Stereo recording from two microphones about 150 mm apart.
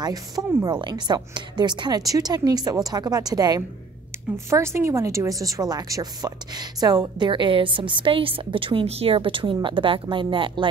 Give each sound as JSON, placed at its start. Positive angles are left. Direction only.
{"t": 0.0, "sound": "a woman's voice", "side_deg": -25}